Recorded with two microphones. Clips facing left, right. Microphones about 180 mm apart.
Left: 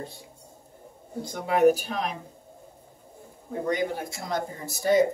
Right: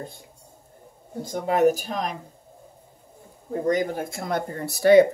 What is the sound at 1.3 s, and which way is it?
Speech, 45° right (ahead or behind).